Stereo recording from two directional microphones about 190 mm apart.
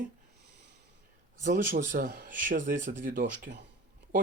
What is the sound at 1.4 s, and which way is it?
Speech, 40° right (ahead or behind).